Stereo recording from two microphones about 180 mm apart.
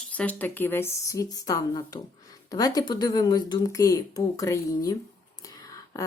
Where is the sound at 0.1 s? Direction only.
10° left (ahead or behind).